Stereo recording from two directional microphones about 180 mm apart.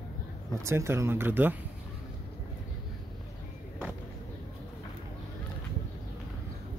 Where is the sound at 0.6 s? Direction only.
15° right (ahead or behind).